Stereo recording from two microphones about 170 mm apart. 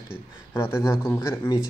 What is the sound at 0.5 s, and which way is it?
Speech, 15° left (ahead or behind).